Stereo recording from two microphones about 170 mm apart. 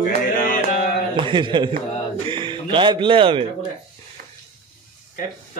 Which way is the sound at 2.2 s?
30° right (ahead or behind).